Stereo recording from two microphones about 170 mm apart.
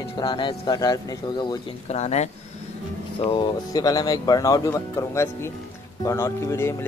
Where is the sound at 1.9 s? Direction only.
40° left (ahead or behind).